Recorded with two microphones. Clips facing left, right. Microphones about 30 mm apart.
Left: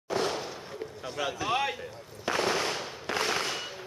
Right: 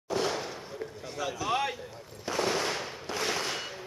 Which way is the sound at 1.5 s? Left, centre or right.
Centre.